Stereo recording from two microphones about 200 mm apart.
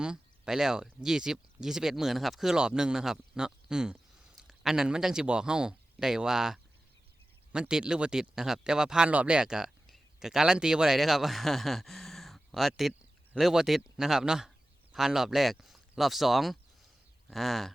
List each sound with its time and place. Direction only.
0.0 s speech: 5° right (ahead or behind)